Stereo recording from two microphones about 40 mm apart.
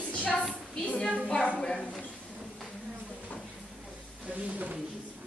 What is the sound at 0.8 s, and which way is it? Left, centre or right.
A woman's voice, left.